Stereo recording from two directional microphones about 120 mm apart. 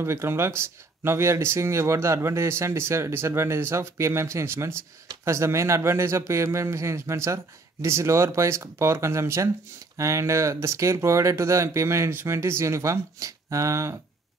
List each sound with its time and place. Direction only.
0.0 s speech: 20° right (ahead or behind)